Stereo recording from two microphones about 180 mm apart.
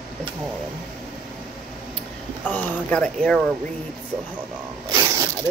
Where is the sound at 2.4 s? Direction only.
10° left (ahead or behind).